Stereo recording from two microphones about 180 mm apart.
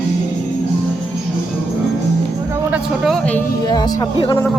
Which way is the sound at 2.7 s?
Centre (ahead or behind).